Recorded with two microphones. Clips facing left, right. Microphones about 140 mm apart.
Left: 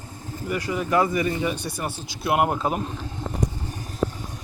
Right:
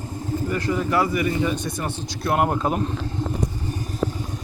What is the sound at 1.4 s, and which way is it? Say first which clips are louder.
Speech: right 2 dB; 10° left (ahead or behind).